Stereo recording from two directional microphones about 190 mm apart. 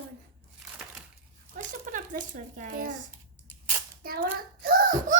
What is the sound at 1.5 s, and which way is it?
A child's voice, 45° right (ahead or behind).